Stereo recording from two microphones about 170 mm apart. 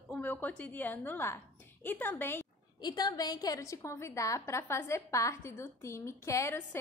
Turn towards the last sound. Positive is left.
turn(degrees=15)  # may be behind; listen again after turning